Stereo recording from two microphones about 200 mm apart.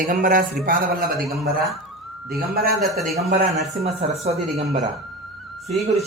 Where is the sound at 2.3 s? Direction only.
50° right (ahead or behind).